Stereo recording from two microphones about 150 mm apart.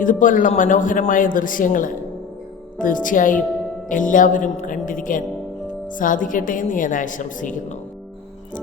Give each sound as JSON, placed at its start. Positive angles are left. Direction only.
{"t": 0.0, "sound": "speech", "side_deg": 60}